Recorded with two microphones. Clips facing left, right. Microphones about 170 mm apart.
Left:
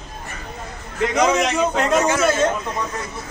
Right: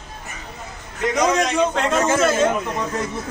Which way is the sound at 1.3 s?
5° left (ahead or behind).